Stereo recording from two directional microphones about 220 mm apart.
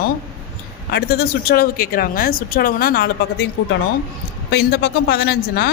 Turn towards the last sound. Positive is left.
turn(degrees=45)  # may be behind; listen again after turning